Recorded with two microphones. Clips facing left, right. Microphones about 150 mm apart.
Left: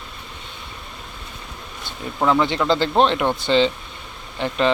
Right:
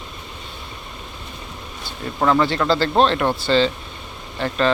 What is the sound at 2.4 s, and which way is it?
Speech, 20° left (ahead or behind).